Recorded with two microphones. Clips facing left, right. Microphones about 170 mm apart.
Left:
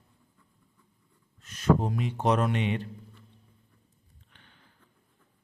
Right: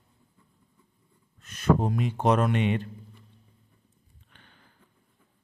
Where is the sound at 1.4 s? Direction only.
55° right (ahead or behind).